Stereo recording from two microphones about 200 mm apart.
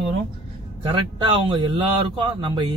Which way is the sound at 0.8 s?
25° right (ahead or behind).